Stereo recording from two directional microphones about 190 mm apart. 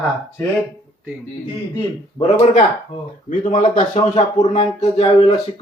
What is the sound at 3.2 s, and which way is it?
A man's voice, 45° left (ahead or behind).